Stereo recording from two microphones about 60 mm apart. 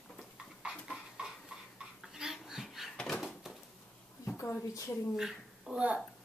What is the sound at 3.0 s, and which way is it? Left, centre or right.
Door, centre.